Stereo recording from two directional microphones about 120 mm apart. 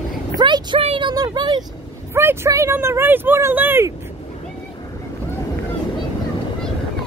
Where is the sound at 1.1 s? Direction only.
35° right (ahead or behind).